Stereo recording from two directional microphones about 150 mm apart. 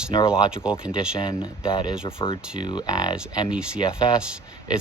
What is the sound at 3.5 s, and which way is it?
Speech, 5° right (ahead or behind).